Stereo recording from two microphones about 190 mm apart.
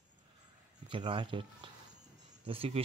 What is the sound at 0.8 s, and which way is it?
Speech, 25° right (ahead or behind).